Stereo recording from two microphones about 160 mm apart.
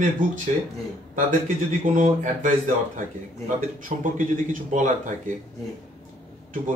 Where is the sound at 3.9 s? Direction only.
55° right (ahead or behind).